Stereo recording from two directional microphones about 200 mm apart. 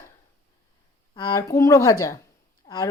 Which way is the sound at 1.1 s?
20° left (ahead or behind).